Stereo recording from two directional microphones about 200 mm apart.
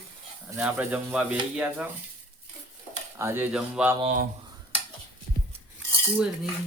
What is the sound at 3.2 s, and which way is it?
Speech, 10° right (ahead or behind).